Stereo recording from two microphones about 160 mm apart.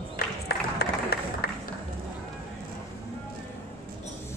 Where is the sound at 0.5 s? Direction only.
75° left (ahead or behind).